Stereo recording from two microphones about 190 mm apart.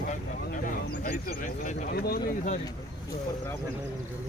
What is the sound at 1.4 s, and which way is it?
Speech, 40° left (ahead or behind).